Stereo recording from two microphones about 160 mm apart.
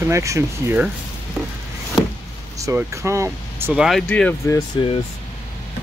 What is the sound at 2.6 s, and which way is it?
Speech, 20° right (ahead or behind).